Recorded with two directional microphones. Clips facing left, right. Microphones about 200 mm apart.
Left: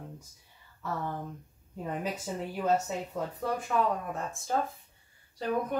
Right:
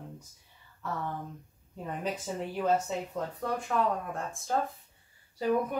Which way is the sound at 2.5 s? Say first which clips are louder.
Even; 5° left (ahead or behind).